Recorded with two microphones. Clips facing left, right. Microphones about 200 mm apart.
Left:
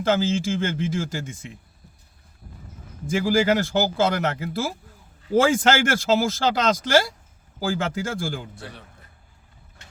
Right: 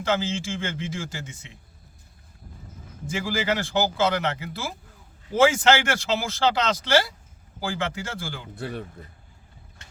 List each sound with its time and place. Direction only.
0.0 s speech: 50° left (ahead or behind)
3.1 s speech: 50° left (ahead or behind)